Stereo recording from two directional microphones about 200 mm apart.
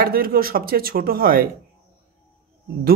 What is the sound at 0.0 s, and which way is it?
Speech, 45° right (ahead or behind).